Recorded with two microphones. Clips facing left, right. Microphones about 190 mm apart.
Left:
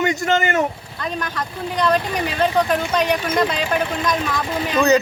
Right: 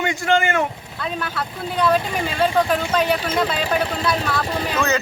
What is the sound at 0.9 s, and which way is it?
Speech, 5° right (ahead or behind).